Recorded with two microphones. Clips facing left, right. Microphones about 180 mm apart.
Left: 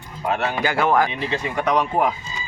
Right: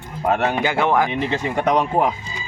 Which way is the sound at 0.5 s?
25° right (ahead or behind).